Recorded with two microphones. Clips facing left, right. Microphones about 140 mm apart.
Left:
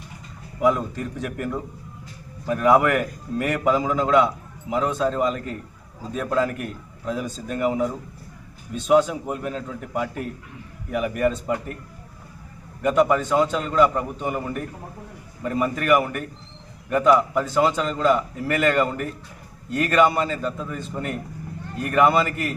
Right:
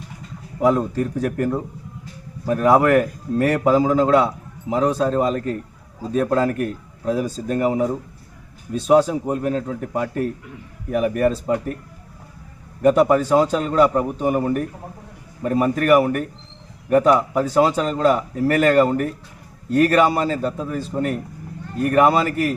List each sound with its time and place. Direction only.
0.6 s a man's voice: 35° right (ahead or behind)
12.8 s a man's voice: 35° right (ahead or behind)